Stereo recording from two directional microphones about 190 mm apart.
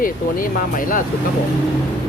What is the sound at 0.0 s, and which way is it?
Speech, 45° left (ahead or behind).